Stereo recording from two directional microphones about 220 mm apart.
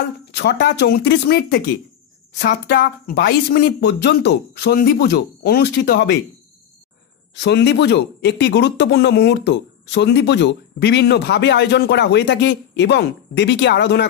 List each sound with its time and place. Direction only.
0.3 s speech: 50° left (ahead or behind)
7.3 s speech: 50° left (ahead or behind)